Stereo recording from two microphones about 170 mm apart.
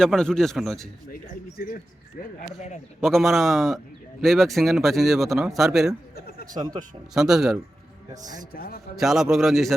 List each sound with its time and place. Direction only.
0.0 s a man's voice: 5° left (ahead or behind)
1.1 s speech: 60° left (ahead or behind)
3.0 s a man's voice: centre (ahead or behind)
6.5 s speech: 20° right (ahead or behind)
7.1 s a man's voice: 5° right (ahead or behind)
8.5 s a man's voice: 60° left (ahead or behind)
9.0 s a man's voice: centre (ahead or behind)